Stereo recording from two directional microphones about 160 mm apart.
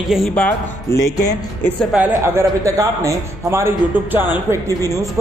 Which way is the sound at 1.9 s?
15° right (ahead or behind).